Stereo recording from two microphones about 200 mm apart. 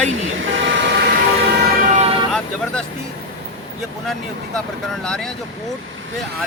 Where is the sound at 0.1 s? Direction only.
70° right (ahead or behind).